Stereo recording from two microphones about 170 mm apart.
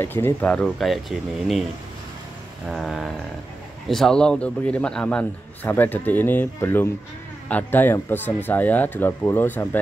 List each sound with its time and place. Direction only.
0.0 s speech: 10° left (ahead or behind)
2.7 s a man's voice: centre (ahead or behind)